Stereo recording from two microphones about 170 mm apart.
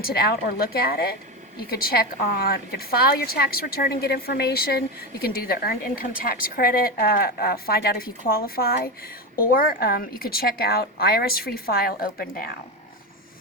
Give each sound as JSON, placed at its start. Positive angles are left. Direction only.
{"t": 0.0, "sound": "a woman's voice", "side_deg": 70}
{"t": 2.3, "sound": "a woman's voice", "side_deg": 65}